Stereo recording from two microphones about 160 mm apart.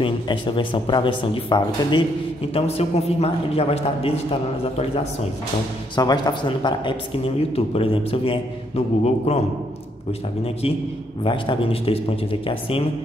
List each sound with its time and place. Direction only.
0.0 s speech: 30° left (ahead or behind)
2.5 s speech: 40° left (ahead or behind)
5.9 s speech: 25° left (ahead or behind); by 9.5 s 40° left (ahead or behind)
11.2 s speech: 35° left (ahead or behind)